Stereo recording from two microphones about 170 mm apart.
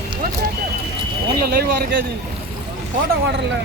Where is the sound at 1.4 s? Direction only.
65° right (ahead or behind).